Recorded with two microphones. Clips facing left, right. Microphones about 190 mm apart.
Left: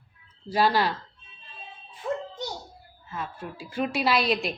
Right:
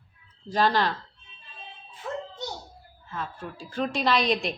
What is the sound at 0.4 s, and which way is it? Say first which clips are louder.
Speech: left 1 dB; 10° left (ahead or behind).